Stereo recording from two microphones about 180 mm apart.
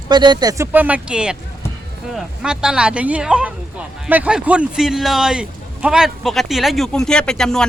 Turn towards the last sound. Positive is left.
turn(degrees=5)  # may be behind; listen again after turning